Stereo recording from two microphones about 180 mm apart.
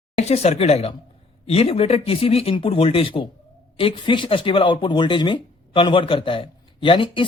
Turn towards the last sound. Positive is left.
turn(degrees=30)  # may be behind; listen again after turning